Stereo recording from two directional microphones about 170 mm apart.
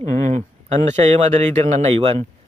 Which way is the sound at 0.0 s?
45° right (ahead or behind).